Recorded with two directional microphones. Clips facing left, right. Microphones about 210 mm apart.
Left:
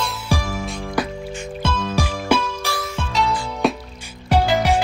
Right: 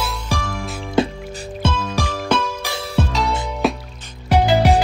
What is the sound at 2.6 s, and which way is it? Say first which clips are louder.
Music: left 1 dB; 20° right (ahead or behind).